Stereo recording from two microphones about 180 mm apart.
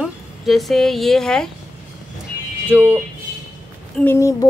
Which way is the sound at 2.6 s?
10° right (ahead or behind).